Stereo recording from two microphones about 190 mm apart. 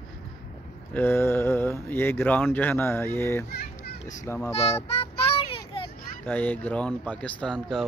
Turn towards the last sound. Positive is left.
turn(degrees=5)  # may be behind; listen again after turning